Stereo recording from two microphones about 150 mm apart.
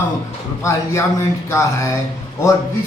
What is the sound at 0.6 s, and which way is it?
A man's voice, 20° left (ahead or behind).